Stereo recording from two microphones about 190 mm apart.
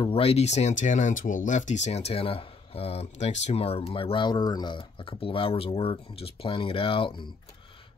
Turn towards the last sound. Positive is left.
turn(degrees=25)  # may be behind; listen again after turning